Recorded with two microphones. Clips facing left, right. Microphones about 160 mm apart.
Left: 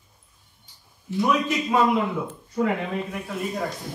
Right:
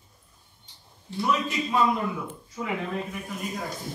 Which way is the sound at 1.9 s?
70° left (ahead or behind).